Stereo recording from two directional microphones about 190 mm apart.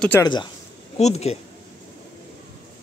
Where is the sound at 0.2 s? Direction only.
25° left (ahead or behind).